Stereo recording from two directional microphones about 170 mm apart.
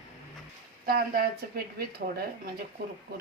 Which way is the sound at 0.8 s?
60° right (ahead or behind).